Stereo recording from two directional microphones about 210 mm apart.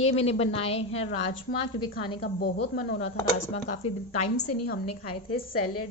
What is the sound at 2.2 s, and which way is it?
Speech, 45° left (ahead or behind).